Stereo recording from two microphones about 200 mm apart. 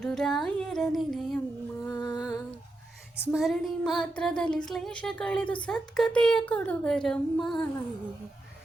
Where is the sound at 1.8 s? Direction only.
15° left (ahead or behind).